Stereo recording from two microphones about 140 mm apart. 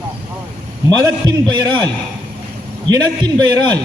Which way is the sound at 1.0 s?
30° right (ahead or behind).